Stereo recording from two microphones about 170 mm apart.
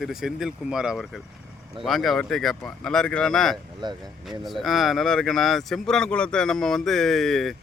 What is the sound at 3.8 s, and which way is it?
Speech, 25° right (ahead or behind).